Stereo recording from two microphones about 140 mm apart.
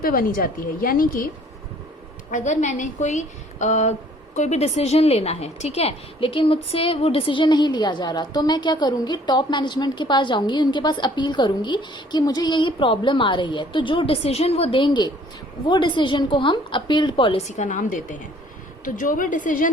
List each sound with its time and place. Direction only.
0.0 s a woman's voice: 90° left
2.3 s a woman's voice: 60° left (ahead or behind); by 17.3 s 35° left (ahead or behind)
17.3 s a woman's voice: 55° left (ahead or behind); by 19.7 s 70° left (ahead or behind)